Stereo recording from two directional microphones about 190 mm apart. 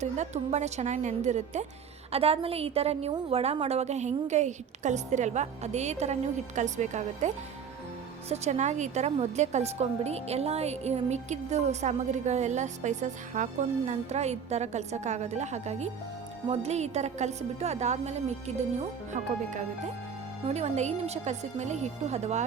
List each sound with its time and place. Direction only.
0.0 s a woman's voice: 35° right (ahead or behind)